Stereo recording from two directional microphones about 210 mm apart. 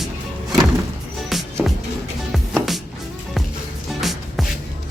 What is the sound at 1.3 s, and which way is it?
Music, centre (ahead or behind).